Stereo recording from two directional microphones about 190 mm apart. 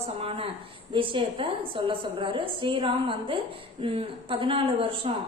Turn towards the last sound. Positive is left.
turn(degrees=-30)  # may be behind; listen again after turning